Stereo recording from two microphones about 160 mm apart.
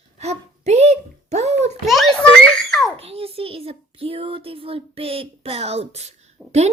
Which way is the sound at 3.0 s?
40° right (ahead or behind).